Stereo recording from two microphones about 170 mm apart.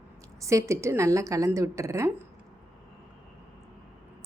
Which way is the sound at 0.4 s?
15° right (ahead or behind).